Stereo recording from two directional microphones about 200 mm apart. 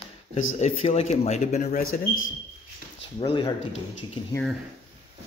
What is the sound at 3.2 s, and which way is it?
Speech, 25° left (ahead or behind).